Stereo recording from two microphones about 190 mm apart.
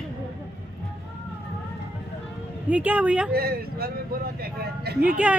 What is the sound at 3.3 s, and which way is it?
Speech, 55° right (ahead or behind).